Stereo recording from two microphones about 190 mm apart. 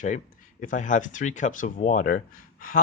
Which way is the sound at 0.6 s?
40° left (ahead or behind).